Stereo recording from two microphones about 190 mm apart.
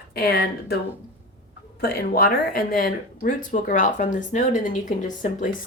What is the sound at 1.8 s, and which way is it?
Speech, 50° left (ahead or behind).